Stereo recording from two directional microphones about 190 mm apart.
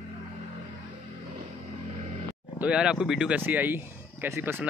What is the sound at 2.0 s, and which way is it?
Vehicle, 35° right (ahead or behind).